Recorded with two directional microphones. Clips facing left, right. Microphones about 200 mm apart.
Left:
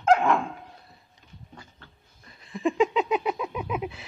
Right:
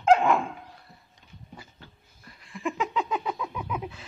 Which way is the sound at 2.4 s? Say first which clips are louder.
Left 7 dB; 20° left (ahead or behind).